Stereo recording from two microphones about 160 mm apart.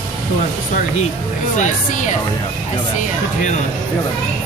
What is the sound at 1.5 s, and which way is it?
Speech, 50° left (ahead or behind).